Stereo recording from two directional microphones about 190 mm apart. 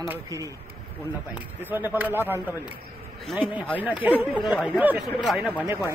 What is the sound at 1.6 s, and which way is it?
Speech, 10° right (ahead or behind).